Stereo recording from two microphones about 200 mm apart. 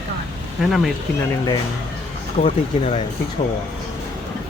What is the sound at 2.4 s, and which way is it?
Speech, 30° left (ahead or behind).